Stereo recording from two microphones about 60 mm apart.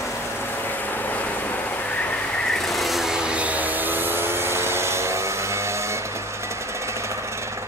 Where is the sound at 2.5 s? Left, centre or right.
Centre; by 6.0 s right.